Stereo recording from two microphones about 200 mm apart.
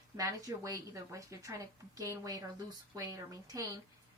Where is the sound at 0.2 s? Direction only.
15° right (ahead or behind).